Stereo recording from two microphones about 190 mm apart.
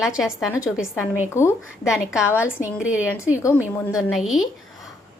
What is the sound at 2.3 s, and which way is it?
Speech, 15° left (ahead or behind).